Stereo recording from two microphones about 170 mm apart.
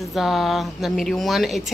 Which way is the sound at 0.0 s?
Centre (ahead or behind).